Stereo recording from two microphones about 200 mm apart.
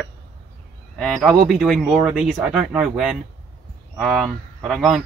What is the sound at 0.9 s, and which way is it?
Speech, centre (ahead or behind).